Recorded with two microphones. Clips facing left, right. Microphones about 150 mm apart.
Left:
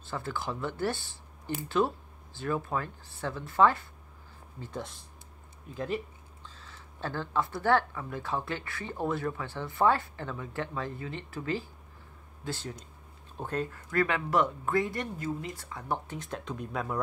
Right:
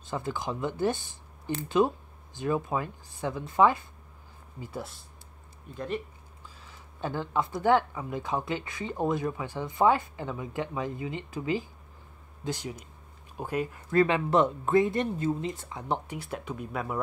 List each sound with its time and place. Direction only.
0.0 s speech: 15° right (ahead or behind); by 6.0 s 5° left (ahead or behind)
6.6 s speech: 15° right (ahead or behind)
16.2 s speech: 5° right (ahead or behind)